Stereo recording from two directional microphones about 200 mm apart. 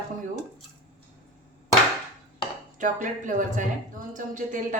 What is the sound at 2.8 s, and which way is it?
Speech, 40° right (ahead or behind).